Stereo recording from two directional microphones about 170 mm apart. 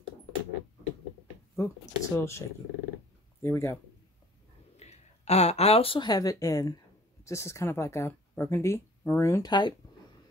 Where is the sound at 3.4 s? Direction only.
15° left (ahead or behind).